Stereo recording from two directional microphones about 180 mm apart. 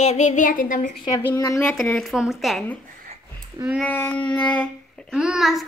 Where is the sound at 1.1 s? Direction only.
20° left (ahead or behind).